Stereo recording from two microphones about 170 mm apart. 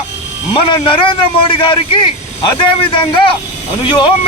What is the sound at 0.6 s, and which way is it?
A man's voice, 30° left (ahead or behind).